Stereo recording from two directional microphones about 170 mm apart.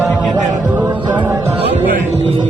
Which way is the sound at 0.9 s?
30° right (ahead or behind).